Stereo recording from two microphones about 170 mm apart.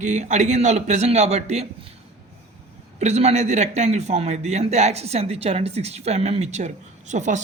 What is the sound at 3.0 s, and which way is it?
A man's voice, 40° right (ahead or behind).